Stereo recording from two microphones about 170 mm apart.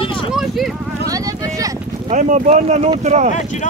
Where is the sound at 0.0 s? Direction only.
30° left (ahead or behind).